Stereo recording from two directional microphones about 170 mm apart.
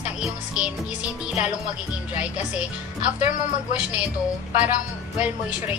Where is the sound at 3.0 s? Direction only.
45° left (ahead or behind).